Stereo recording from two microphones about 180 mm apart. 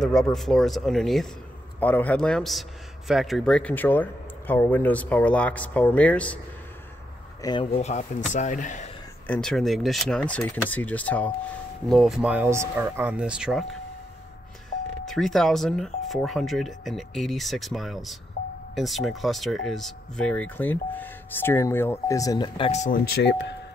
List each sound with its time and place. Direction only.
0.0 s speech: centre (ahead or behind)
7.4 s speech: 25° left (ahead or behind)
7.7 s speech: 40° left (ahead or behind)
9.3 s speech: 5° left (ahead or behind)
15.0 s speech: centre (ahead or behind)
18.4 s music: 50° left (ahead or behind)
18.8 s speech: centre (ahead or behind); by 22.7 s 20° left (ahead or behind)
22.7 s speech: 45° left (ahead or behind); by 23.5 s 70° left (ahead or behind)